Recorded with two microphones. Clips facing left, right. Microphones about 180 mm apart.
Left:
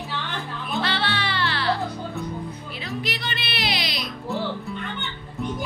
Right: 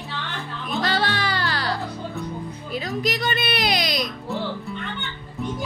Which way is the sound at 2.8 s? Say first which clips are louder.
Right 5 dB; 45° right (ahead or behind).